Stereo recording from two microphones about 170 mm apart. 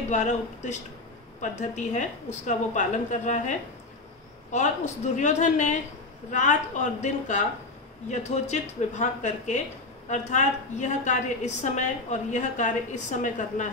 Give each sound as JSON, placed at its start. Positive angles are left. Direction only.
{"t": 0.1, "sound": "a woman's voice", "side_deg": 45}